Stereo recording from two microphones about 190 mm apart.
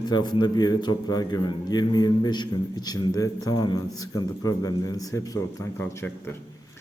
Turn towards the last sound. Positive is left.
turn(degrees=10)  # may be behind; listen again after turning